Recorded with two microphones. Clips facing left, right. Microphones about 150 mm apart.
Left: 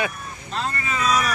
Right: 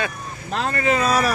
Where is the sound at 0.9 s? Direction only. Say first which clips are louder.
Right 5 dB; 55° right (ahead or behind).